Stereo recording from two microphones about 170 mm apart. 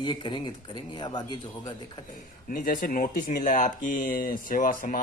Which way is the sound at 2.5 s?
55° left (ahead or behind).